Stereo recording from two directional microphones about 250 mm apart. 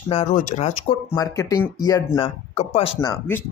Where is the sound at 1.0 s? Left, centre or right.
Centre.